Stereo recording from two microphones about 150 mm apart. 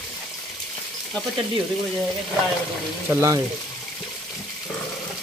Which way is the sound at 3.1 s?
15° right (ahead or behind).